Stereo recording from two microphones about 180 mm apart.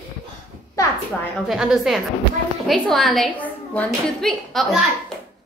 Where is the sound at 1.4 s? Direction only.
Centre (ahead or behind).